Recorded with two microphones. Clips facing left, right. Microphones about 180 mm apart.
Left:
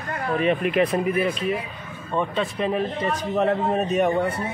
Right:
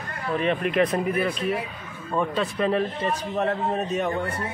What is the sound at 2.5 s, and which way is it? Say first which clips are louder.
A man's voice: right 1 dB; 5° left (ahead or behind).